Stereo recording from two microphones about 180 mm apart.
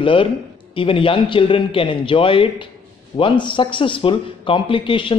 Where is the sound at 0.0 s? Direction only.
30° left (ahead or behind).